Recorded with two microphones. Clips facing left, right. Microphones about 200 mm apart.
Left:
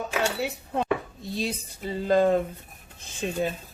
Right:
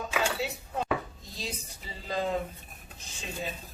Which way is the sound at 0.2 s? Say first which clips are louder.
Left 3 dB; 65° left (ahead or behind).